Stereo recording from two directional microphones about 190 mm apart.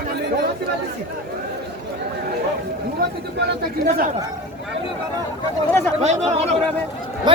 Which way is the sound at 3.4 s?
55° right (ahead or behind).